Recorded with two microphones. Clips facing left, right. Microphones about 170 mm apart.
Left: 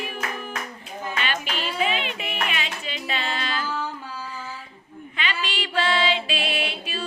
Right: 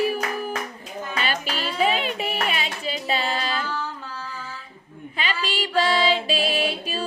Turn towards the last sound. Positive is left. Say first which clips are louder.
# right 4 dB
turn(degrees=-40)  # may be behind; listen again after turning